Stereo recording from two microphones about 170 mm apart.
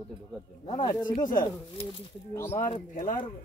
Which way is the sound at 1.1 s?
55° left (ahead or behind).